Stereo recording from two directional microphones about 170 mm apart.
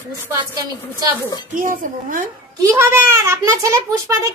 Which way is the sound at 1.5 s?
55° right (ahead or behind).